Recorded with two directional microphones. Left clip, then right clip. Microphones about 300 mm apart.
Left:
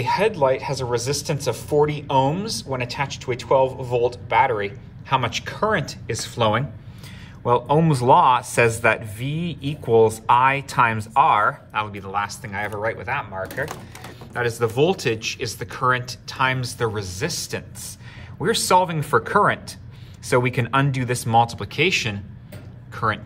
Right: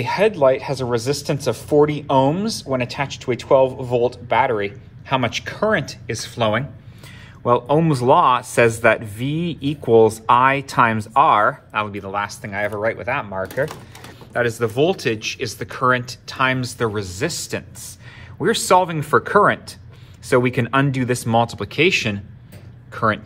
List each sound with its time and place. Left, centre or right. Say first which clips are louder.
0.0 s speech: right 3 dB; centre